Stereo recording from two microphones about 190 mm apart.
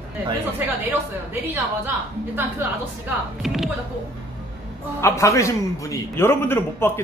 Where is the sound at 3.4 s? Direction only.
Centre (ahead or behind).